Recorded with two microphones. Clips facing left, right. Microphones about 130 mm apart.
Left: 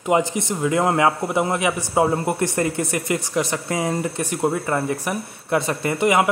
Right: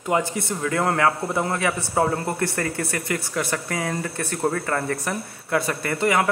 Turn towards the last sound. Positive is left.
turn(degrees=20)  # may be behind; listen again after turning